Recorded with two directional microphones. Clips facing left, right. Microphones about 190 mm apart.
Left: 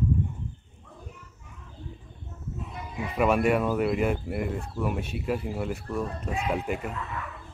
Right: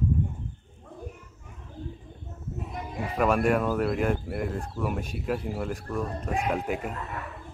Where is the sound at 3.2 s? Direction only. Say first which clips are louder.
Left 1 dB; 5° left (ahead or behind).